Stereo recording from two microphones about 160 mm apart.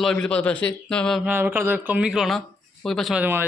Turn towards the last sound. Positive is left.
turn(degrees=0)  # may be behind; listen again after turning